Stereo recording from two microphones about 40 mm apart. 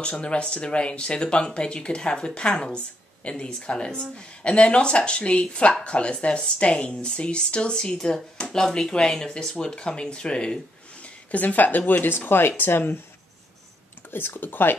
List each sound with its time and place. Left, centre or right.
0.0 s speech: left
8.5 s speech: centre
11.0 s speech: left
12.3 s speech: left
14.1 s speech: left